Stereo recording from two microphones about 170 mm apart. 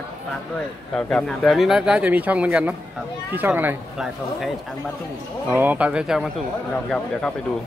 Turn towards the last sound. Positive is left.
turn(degrees=5)  # may be behind; listen again after turning